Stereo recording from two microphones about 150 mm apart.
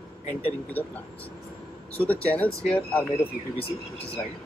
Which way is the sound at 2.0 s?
10° left (ahead or behind).